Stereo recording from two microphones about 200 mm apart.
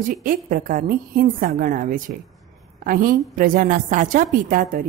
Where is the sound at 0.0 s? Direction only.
45° right (ahead or behind).